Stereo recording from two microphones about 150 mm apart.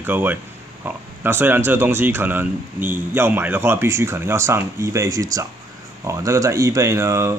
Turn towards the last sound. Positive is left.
turn(degrees=-20)  # may be behind; listen again after turning